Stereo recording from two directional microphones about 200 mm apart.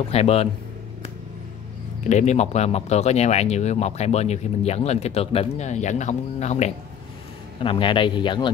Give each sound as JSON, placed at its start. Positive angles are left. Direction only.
{"t": 0.1, "sound": "speech", "side_deg": 30}
{"t": 2.0, "sound": "a man's voice", "side_deg": 35}